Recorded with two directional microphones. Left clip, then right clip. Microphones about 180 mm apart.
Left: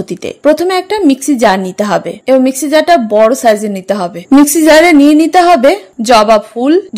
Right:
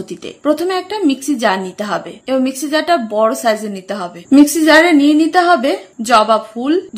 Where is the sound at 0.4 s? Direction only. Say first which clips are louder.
Left 6 dB; 40° left (ahead or behind).